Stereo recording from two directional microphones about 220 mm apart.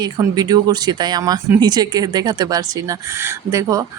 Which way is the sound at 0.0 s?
20° right (ahead or behind).